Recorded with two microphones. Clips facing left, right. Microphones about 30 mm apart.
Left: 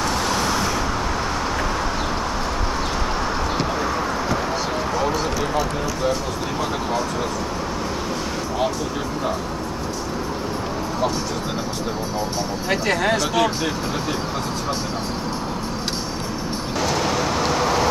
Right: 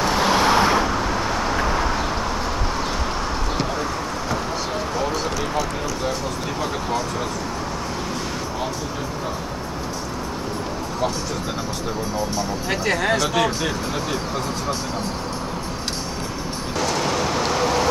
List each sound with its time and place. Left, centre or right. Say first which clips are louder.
0.0 s vehicle: right 3 dB; centre
1.6 s a sound: right 2 dB; centre
4.9 s basketball bounce: left 2 dB; centre
12.6 s speech: left 2 dB; centre
16.8 s vehicle: even; centre